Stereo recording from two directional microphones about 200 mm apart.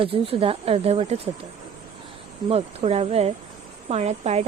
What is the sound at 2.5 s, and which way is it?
Speech, 30° right (ahead or behind).